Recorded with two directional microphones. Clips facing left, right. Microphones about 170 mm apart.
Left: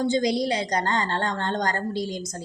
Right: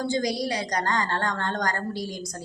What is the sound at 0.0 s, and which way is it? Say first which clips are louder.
A woman's voice: left 4 dB; 20° left (ahead or behind).